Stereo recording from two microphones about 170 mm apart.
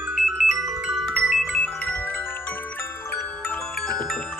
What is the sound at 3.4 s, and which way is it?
Music, 5° left (ahead or behind).